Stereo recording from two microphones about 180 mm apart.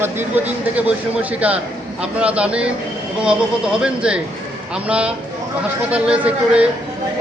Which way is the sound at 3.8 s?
5° right (ahead or behind).